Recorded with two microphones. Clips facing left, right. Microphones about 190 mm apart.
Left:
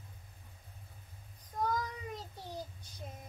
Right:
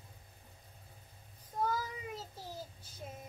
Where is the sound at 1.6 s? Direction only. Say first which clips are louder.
Left 2 dB; 5° right (ahead or behind).